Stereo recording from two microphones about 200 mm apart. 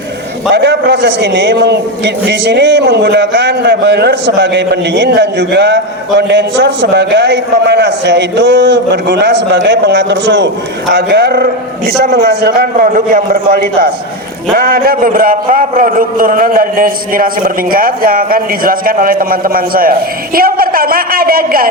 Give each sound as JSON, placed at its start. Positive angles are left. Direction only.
{"t": 0.5, "sound": "a man's voice", "side_deg": -55}